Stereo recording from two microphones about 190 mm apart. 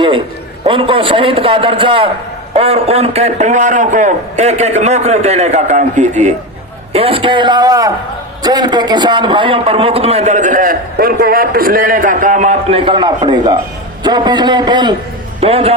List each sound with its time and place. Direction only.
0.6 s a man's voice: 25° right (ahead or behind)